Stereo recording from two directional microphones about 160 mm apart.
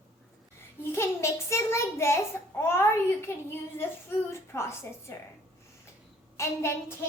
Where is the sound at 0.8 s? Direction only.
15° left (ahead or behind).